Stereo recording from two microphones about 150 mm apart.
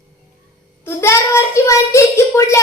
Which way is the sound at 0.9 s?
15° left (ahead or behind).